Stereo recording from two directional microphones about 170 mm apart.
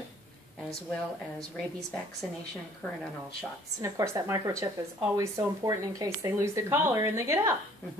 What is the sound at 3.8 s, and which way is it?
Speech, 20° right (ahead or behind).